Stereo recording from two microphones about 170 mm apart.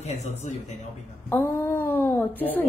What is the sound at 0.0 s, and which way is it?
Speech, 40° left (ahead or behind).